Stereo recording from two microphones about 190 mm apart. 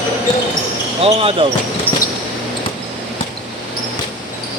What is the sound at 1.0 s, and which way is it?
Speech, 30° right (ahead or behind).